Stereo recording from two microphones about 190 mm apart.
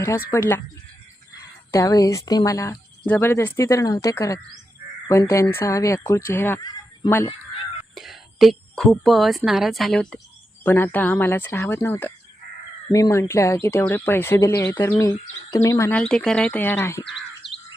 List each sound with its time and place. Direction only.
0.3 s speech: 10° left (ahead or behind)
1.7 s speech: 15° left (ahead or behind)
7.9 s speech: centre (ahead or behind); by 16.0 s 15° left (ahead or behind)
16.0 s speech: 5° left (ahead or behind)